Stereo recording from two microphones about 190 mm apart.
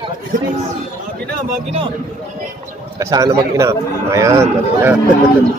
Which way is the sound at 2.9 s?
20° right (ahead or behind).